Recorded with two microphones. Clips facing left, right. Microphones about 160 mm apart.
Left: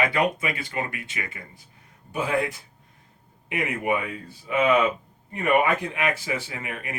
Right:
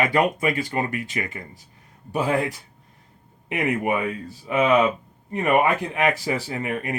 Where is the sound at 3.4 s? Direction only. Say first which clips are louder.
Right 5 dB; 40° right (ahead or behind).